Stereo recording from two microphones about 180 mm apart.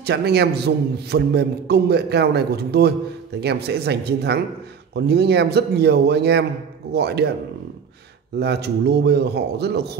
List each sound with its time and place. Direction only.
0.0 s a man's voice: 65° right (ahead or behind)
8.4 s a man's voice: 65° right (ahead or behind)